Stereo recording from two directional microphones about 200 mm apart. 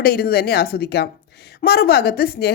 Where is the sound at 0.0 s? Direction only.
50° left (ahead or behind).